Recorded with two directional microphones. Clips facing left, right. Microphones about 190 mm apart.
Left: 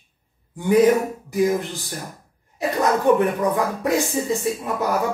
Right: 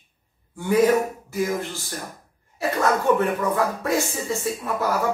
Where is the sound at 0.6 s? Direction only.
15° left (ahead or behind).